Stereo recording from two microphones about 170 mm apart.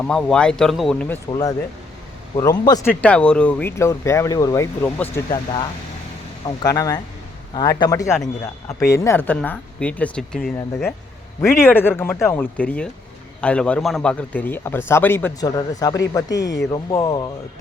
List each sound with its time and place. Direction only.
0.0 s speech: 5° left (ahead or behind)
1.3 s speech: 20° left (ahead or behind)
3.0 s speech: 5° left (ahead or behind)
11.3 s speech: 15° left (ahead or behind)